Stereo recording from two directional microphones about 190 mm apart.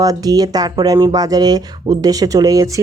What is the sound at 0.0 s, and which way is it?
Speech, 20° right (ahead or behind).